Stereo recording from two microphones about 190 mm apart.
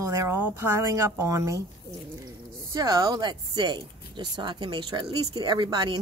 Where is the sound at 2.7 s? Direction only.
20° right (ahead or behind).